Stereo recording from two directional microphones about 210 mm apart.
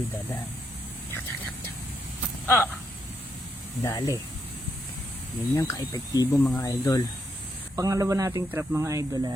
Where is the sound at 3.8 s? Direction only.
15° left (ahead or behind).